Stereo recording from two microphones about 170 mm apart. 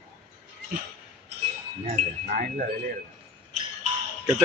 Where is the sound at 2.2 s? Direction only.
55° right (ahead or behind).